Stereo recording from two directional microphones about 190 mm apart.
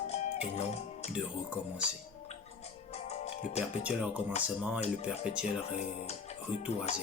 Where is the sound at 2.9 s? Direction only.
35° left (ahead or behind).